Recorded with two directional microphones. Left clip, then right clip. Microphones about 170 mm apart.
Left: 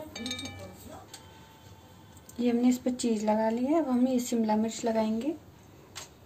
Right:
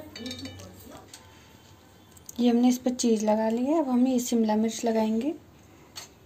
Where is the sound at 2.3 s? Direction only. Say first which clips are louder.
Right 4 dB; 35° right (ahead or behind).